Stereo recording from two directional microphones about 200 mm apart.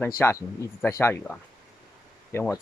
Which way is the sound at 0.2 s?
15° left (ahead or behind).